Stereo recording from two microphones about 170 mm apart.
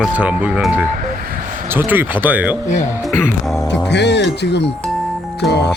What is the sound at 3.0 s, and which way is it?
Music, centre (ahead or behind).